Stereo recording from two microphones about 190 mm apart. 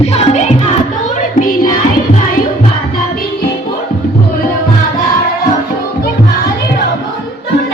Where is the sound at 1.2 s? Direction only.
45° left (ahead or behind).